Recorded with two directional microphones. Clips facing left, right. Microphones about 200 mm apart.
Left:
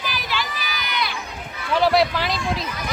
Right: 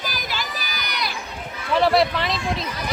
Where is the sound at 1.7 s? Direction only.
Centre (ahead or behind).